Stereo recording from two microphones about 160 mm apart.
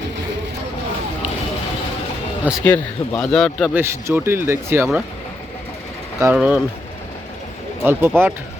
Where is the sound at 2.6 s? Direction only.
10° left (ahead or behind).